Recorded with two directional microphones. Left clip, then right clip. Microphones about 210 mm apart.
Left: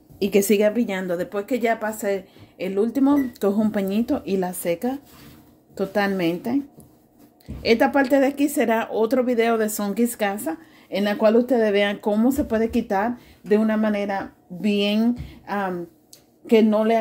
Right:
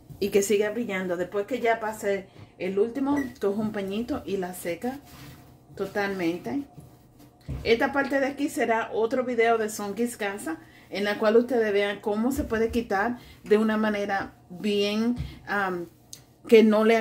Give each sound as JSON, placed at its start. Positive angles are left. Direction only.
{"t": 0.2, "sound": "a woman's voice", "side_deg": 25}
{"t": 0.6, "sound": "a woman's voice", "side_deg": 40}
{"t": 7.6, "sound": "a woman's voice", "side_deg": 45}
{"t": 16.7, "sound": "a woman's voice", "side_deg": -5}